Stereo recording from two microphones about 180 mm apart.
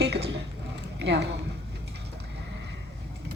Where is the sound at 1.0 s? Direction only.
70° right (ahead or behind).